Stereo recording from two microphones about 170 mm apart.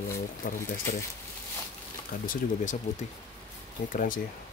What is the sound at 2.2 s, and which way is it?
Speech, 50° left (ahead or behind).